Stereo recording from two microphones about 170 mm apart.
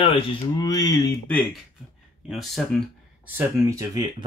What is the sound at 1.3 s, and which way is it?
Speech, centre (ahead or behind).